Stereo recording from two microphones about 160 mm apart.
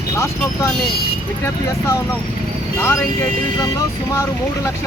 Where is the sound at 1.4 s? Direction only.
15° left (ahead or behind).